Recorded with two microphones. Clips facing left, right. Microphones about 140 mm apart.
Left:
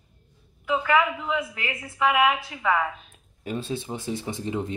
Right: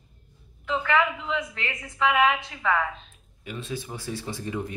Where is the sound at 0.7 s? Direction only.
5° left (ahead or behind).